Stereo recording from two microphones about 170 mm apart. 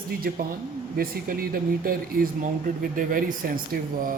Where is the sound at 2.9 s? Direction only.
55° right (ahead or behind).